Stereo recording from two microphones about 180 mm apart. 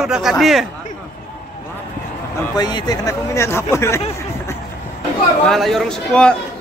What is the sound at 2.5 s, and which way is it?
Speech, 20° left (ahead or behind).